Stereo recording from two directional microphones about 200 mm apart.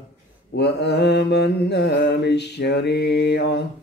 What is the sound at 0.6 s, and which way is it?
Mantra, 55° left (ahead or behind).